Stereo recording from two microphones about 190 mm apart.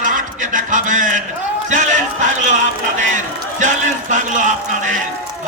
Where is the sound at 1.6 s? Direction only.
40° right (ahead or behind).